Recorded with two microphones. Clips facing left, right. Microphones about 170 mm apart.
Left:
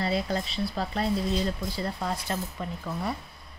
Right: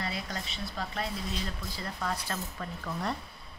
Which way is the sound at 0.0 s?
30° left (ahead or behind).